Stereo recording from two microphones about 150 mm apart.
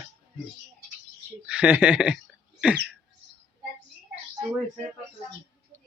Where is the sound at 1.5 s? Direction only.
5° right (ahead or behind).